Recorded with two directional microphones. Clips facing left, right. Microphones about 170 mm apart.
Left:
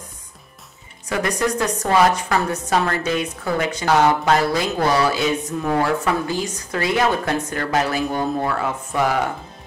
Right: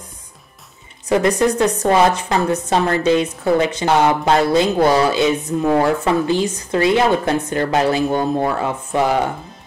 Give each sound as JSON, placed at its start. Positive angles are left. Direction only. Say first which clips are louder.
{"t": 1.0, "sound": "a woman's voice", "louder": "right 6 dB", "side_deg": -25}